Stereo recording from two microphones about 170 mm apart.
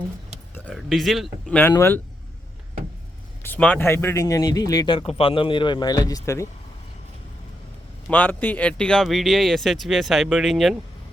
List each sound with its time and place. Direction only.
0.5 s speech: 5° left (ahead or behind)
1.7 s speech: 15° left (ahead or behind)
3.4 s speech: 10° left (ahead or behind)
8.1 s speech: 10° left (ahead or behind)